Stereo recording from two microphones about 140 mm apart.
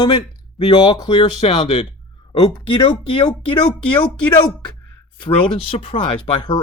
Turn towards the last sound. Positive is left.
turn(degrees=35)  # may be behind; listen again after turning